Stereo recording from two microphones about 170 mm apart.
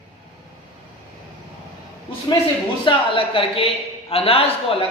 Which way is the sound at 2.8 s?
30° left (ahead or behind).